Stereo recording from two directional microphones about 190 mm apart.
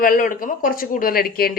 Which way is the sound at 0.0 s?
50° left (ahead or behind).